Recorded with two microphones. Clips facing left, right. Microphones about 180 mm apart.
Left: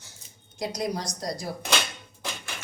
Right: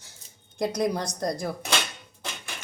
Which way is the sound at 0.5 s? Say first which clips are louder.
Right 4 dB; 55° right (ahead or behind).